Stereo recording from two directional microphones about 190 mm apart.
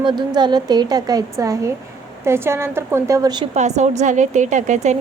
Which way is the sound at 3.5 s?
35° right (ahead or behind).